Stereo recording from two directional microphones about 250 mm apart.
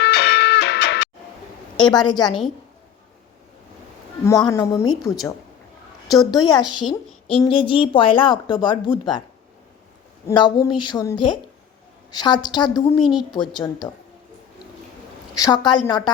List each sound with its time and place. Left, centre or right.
0.0 s music: left
1.8 s speech: centre
4.3 s speech: centre
4.9 s a woman's voice: centre
6.3 s speech: centre
10.2 s speech: centre
15.4 s speech: centre